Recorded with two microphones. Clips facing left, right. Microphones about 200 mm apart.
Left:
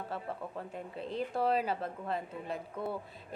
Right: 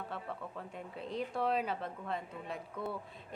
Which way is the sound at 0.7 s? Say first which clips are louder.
Even; centre (ahead or behind).